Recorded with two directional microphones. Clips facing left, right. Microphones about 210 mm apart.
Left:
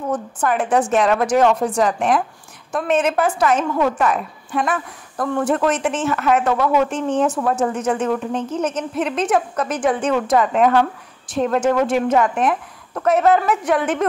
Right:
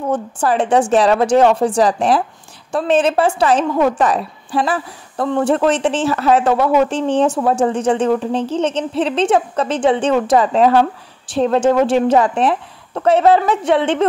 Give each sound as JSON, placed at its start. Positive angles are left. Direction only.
{"t": 0.1, "sound": "a woman's voice", "side_deg": -30}